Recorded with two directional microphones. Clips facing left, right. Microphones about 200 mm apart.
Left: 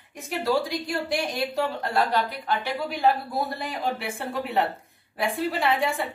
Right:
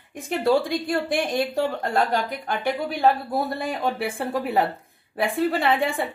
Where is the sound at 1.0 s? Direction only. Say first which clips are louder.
Right 4 dB; 50° right (ahead or behind).